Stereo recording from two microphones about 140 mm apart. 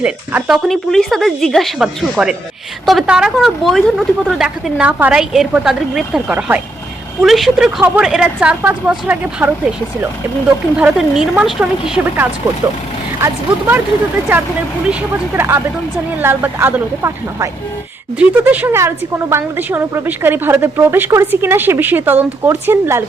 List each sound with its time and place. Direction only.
0.0 s a woman's voice: 5° right (ahead or behind)
7.2 s a woman's voice: centre (ahead or behind)
10.8 s a woman's voice: 5° right (ahead or behind)